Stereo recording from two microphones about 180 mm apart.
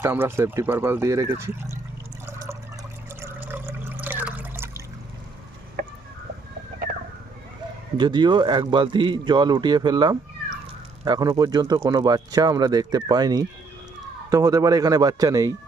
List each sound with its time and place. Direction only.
0.0 s speech: 15° right (ahead or behind)
2.2 s water: 15° right (ahead or behind)
7.9 s speech: 25° right (ahead or behind)